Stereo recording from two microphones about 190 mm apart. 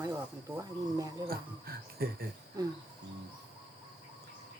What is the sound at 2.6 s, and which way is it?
Speech, 20° right (ahead or behind).